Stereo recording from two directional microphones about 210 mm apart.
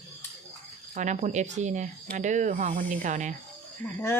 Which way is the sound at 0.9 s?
35° right (ahead or behind).